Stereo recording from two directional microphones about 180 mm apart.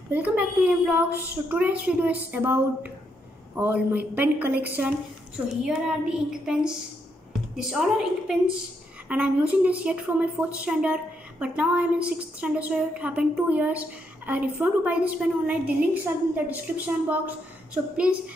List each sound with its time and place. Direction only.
0.1 s speech: 10° right (ahead or behind)
5.6 s child singing: 5° right (ahead or behind)
9.1 s speech: 10° right (ahead or behind)